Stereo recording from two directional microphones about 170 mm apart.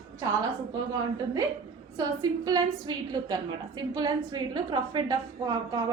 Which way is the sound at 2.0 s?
25° right (ahead or behind).